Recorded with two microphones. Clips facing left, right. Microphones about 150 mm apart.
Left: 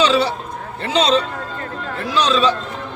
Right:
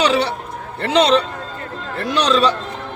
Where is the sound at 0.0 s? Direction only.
65° right (ahead or behind).